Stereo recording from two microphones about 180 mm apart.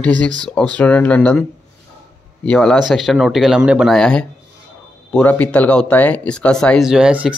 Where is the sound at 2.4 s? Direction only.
5° left (ahead or behind).